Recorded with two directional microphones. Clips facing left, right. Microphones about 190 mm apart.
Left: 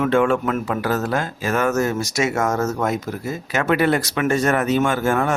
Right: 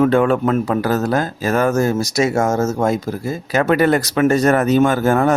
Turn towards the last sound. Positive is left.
turn(degrees=-40)  # may be behind; listen again after turning